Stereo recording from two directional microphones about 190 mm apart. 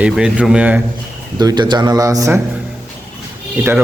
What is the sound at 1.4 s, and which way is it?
Speech, 20° right (ahead or behind).